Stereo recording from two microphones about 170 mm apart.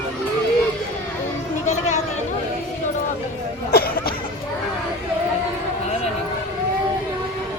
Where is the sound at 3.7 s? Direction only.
65° left (ahead or behind).